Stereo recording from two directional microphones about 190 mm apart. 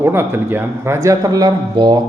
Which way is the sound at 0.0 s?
10° right (ahead or behind).